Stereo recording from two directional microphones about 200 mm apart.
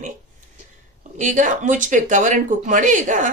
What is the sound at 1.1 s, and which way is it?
A woman's voice, 40° right (ahead or behind).